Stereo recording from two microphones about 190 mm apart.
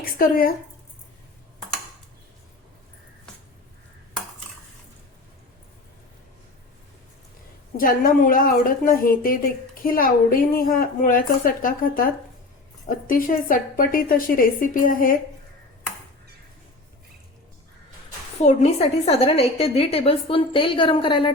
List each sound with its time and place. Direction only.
0.0 s a woman's voice: 50° left (ahead or behind)
7.8 s a woman's voice: 45° left (ahead or behind)
18.4 s a woman's voice: 35° left (ahead or behind)